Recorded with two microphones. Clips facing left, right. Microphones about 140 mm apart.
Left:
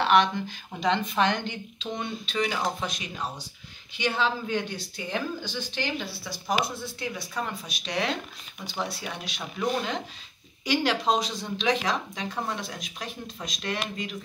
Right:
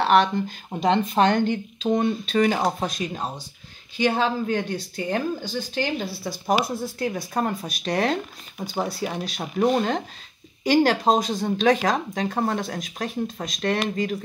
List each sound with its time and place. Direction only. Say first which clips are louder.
0.0 s speech: right 3 dB; 40° right (ahead or behind)